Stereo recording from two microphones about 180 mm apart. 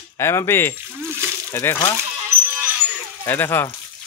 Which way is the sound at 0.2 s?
15° left (ahead or behind).